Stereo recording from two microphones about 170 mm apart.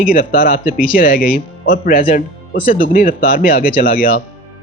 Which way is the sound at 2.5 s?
30° left (ahead or behind).